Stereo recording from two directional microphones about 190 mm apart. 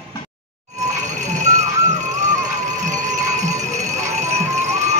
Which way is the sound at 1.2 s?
40° right (ahead or behind).